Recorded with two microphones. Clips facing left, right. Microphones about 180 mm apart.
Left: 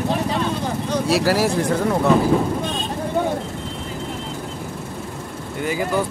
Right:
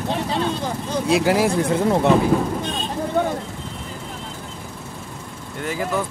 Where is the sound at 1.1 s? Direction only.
20° right (ahead or behind).